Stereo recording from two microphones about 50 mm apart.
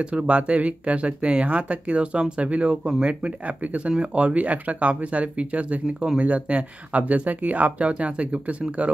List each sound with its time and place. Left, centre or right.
0.0 s speech: right